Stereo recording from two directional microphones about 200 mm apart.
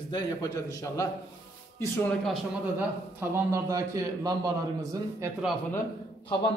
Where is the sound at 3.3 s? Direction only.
15° right (ahead or behind).